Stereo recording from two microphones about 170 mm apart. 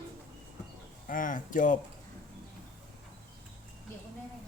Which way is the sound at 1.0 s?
50° left (ahead or behind).